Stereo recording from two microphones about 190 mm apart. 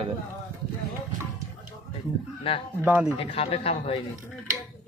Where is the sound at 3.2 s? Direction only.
30° left (ahead or behind).